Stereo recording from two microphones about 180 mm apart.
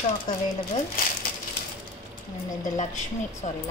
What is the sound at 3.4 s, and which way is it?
Speech, 40° left (ahead or behind).